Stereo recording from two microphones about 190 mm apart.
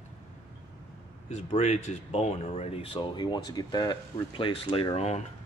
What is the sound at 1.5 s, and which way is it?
Speech, 35° left (ahead or behind).